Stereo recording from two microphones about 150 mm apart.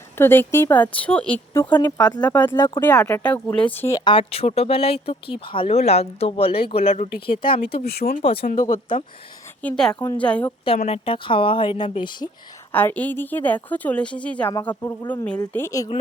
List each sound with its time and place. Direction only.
0.2 s a woman's voice: 15° left (ahead or behind)
3.9 s speech: 35° left (ahead or behind)
7.3 s speech: 35° left (ahead or behind)
8.0 s speech: 50° left (ahead or behind)
8.5 s speech: 30° left (ahead or behind)
9.6 s a woman's voice: 5° left (ahead or behind)
10.8 s speech: 45° left (ahead or behind)
12.7 s a woman's voice: 10° left (ahead or behind)